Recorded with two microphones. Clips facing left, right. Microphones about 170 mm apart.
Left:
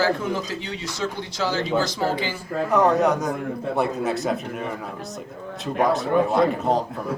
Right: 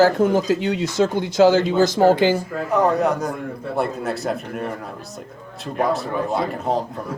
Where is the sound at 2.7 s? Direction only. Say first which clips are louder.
Even; centre (ahead or behind).